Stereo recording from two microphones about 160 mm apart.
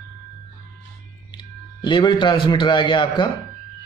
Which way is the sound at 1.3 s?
30° left (ahead or behind).